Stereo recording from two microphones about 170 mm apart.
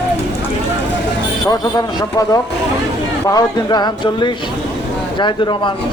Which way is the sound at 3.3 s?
25° left (ahead or behind).